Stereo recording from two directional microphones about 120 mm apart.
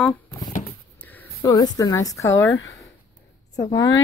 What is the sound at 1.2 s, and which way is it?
A woman's voice, 30° left (ahead or behind).